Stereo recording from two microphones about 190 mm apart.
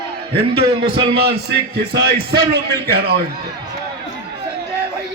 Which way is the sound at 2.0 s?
55° right (ahead or behind).